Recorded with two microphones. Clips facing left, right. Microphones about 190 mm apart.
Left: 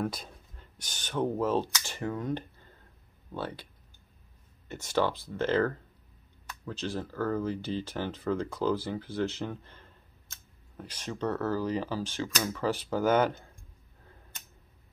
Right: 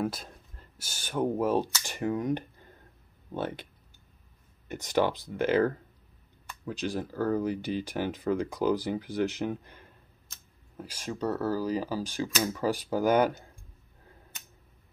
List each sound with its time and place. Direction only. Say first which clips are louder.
0.0 s speech: right 2 dB; centre (ahead or behind); by 3.6 s 20° right (ahead or behind)
4.6 s speech: right 2 dB; 15° right (ahead or behind)